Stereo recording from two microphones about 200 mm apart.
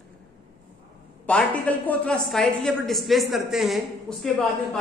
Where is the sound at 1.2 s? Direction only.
5° left (ahead or behind).